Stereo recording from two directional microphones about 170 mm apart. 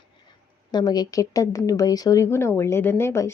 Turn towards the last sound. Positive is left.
turn(degrees=15)  # may be behind; listen again after turning